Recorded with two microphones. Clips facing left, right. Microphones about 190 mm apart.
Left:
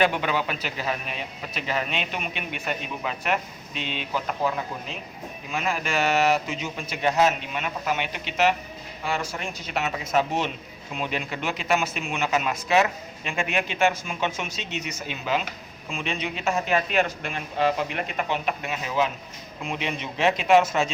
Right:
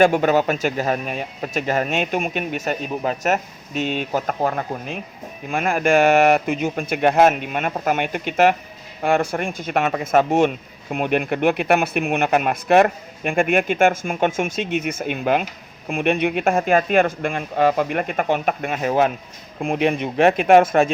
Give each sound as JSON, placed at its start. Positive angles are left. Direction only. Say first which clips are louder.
{"t": 0.0, "sound": "speech", "louder": "right 8 dB", "side_deg": -45}